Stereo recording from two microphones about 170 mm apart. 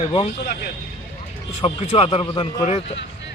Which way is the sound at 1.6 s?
35° left (ahead or behind).